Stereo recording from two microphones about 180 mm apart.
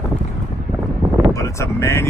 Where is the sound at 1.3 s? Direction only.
15° left (ahead or behind).